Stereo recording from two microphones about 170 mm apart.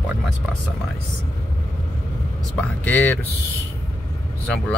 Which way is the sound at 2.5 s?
10° left (ahead or behind).